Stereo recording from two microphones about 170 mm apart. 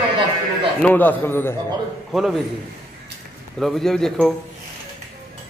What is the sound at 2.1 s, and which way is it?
Speech, centre (ahead or behind).